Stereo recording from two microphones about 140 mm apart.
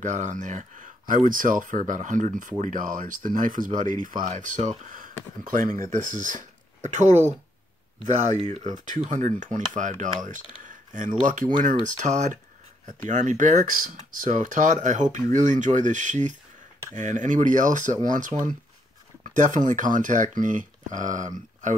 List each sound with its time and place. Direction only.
0.0 s speech: 60° right (ahead or behind)